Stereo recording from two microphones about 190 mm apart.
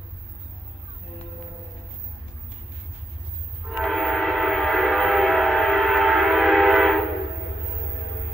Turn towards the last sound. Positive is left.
turn(degrees=0)  # may be behind; listen again after turning